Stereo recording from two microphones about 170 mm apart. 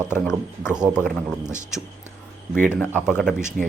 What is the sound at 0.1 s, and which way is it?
Speech, 15° left (ahead or behind).